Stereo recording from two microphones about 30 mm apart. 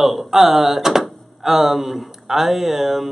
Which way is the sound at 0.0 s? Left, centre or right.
Centre.